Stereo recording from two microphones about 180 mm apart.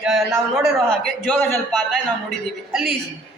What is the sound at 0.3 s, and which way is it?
Speech, 15° right (ahead or behind).